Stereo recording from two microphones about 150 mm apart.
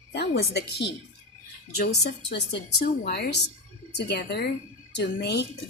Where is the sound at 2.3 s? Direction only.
90° left.